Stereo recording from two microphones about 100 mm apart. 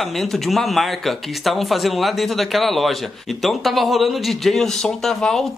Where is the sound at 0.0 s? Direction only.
Centre (ahead or behind).